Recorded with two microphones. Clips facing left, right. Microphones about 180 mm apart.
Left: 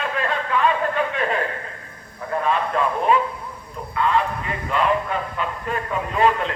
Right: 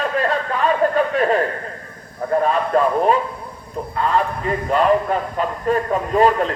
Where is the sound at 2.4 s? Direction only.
40° right (ahead or behind).